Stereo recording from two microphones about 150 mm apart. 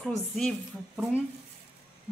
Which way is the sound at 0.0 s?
Centre (ahead or behind).